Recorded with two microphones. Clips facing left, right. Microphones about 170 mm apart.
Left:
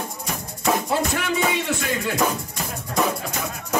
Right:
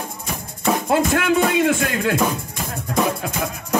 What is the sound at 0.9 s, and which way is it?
Music, 50° right (ahead or behind).